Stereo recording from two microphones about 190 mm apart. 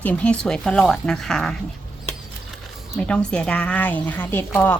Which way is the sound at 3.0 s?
5° left (ahead or behind).